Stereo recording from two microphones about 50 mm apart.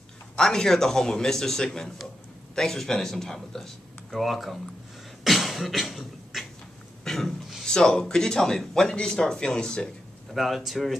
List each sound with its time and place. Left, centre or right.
0.4 s speech: centre
5.2 s beatboxing: centre
7.1 s a sound: centre
7.6 s speech: centre
10.3 s speech: centre